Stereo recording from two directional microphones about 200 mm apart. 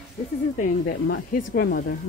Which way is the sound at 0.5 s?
45° left (ahead or behind).